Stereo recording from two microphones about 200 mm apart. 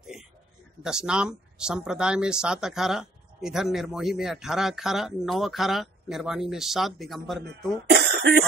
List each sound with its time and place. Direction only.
0.8 s speech: 5° right (ahead or behind)
7.9 s cough: 55° right (ahead or behind)